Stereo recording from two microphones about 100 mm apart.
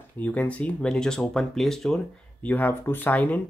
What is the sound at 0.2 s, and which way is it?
Speech, 15° left (ahead or behind).